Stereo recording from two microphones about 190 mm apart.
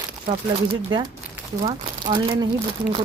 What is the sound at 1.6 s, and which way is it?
Speech, 25° right (ahead or behind).